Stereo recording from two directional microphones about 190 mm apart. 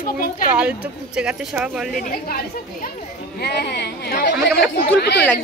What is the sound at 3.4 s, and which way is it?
Speech, 60° left (ahead or behind).